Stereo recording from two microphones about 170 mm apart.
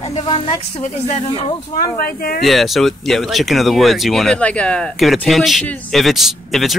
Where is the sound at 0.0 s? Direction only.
35° left (ahead or behind).